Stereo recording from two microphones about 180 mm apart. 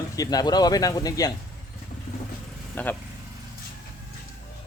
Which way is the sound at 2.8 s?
10° left (ahead or behind).